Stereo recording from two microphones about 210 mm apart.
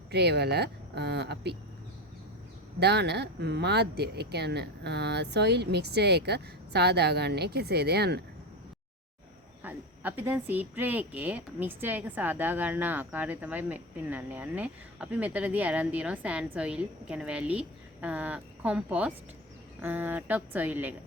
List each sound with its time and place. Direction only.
0.1 s speech: 50° right (ahead or behind)
2.8 s speech: 55° right (ahead or behind)
9.6 s speech: 10° right (ahead or behind)